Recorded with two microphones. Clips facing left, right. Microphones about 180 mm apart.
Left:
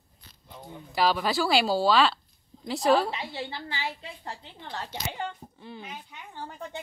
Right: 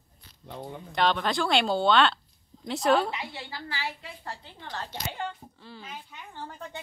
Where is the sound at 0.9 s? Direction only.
5° left (ahead or behind).